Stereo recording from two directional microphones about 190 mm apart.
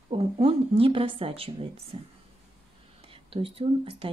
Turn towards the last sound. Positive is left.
turn(degrees=-30)  # may be behind; listen again after turning